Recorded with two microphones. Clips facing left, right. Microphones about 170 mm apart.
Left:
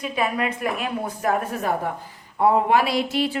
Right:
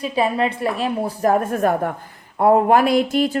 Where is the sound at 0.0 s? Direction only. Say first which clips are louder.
Right 5 dB; 30° right (ahead or behind).